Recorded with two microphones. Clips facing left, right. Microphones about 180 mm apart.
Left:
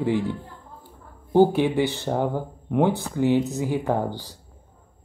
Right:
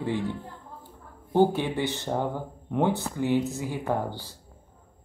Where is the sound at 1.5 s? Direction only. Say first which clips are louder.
Left 6 dB; 15° left (ahead or behind).